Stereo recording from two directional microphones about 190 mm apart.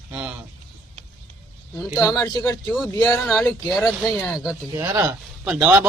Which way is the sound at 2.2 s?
20° left (ahead or behind).